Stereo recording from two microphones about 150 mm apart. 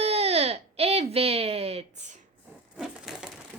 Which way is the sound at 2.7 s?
Centre (ahead or behind).